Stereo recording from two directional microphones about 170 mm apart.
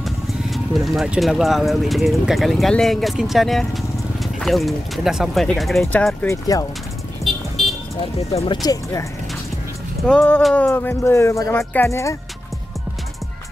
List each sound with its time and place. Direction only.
0.0 s speech: centre (ahead or behind)
6.5 s speech: 20° left (ahead or behind)
7.2 s music: 20° left (ahead or behind)
8.3 s speech: 35° left (ahead or behind)
10.0 s speech: 10° left (ahead or behind)